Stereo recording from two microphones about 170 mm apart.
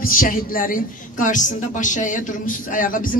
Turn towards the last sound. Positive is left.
turn(degrees=55)  # may be behind; listen again after turning